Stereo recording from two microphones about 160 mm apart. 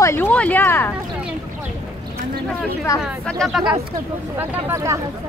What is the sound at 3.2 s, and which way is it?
Speech, centre (ahead or behind).